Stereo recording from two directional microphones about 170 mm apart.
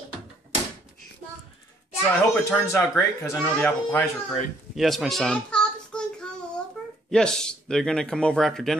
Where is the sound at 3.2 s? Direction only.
15° left (ahead or behind).